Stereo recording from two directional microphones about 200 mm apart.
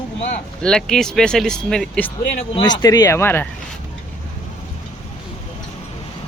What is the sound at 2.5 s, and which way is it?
Speech, 20° left (ahead or behind).